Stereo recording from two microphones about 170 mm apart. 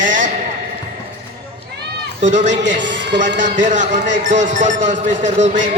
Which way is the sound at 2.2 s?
45° right (ahead or behind).